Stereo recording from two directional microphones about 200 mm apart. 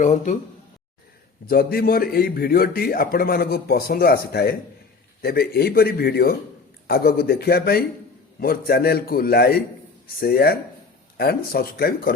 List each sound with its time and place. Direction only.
0.0 s a man's voice: 35° left (ahead or behind)
1.5 s a man's voice: 50° left (ahead or behind)